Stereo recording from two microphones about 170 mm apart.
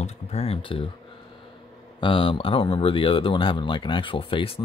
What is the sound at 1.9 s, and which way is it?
Speech, 30° left (ahead or behind).